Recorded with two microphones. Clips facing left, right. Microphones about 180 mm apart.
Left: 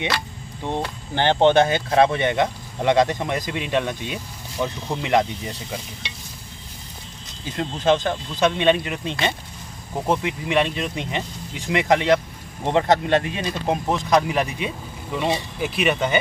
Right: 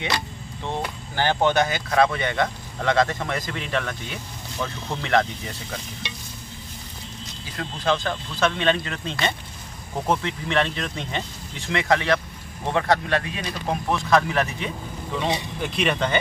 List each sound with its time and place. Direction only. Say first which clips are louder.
1.1 s speech: left 5 dB; 25° left (ahead or behind)
7.5 s speech: left 5 dB; 20° left (ahead or behind)
15.6 s speech: left 2 dB; 5° left (ahead or behind)